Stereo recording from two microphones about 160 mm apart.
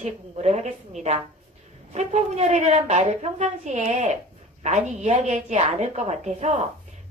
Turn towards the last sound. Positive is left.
turn(degrees=-45)  # may be behind; listen again after turning